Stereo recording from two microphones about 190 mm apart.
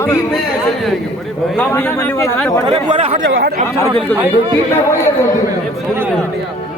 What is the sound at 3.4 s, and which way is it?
Speech, 55° right (ahead or behind).